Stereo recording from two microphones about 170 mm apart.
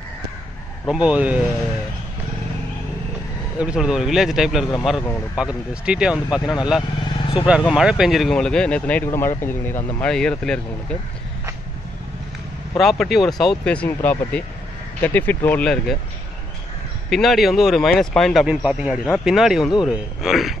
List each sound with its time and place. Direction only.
0.8 s speech: 5° right (ahead or behind)
3.5 s speech: 5° right (ahead or behind)
7.2 s vehicle: 30° left (ahead or behind)
7.6 s speech: 5° right (ahead or behind)
12.7 s speech: centre (ahead or behind)
17.1 s speech: centre (ahead or behind)